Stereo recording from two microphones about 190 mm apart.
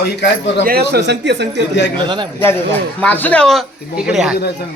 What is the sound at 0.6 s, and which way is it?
A man's voice, 55° right (ahead or behind).